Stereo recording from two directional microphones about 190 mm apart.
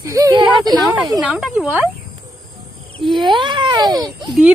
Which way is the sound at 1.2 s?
5° right (ahead or behind).